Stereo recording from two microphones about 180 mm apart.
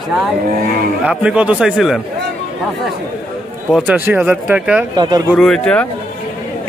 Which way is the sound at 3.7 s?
10° right (ahead or behind).